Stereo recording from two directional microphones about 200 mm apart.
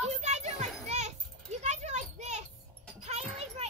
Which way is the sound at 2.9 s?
30° right (ahead or behind).